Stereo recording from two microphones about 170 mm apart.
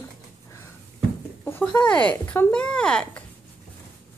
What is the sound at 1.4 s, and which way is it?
Speech, 10° left (ahead or behind).